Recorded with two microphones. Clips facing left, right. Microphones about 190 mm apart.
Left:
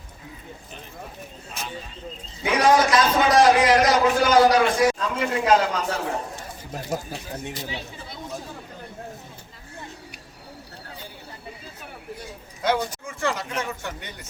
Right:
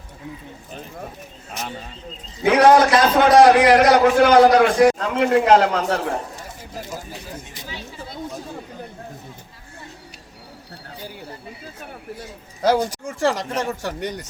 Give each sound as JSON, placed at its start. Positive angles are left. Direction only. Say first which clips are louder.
{"t": 2.5, "sound": "a man's voice", "louder": "right 5 dB", "side_deg": -65}
{"t": 12.6, "sound": "speech", "louder": "right 5 dB", "side_deg": -40}